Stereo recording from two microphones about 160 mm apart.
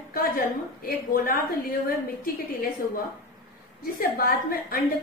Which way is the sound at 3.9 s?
70° left (ahead or behind).